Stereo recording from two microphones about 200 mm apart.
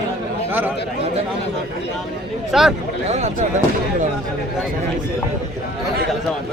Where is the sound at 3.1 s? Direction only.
35° right (ahead or behind).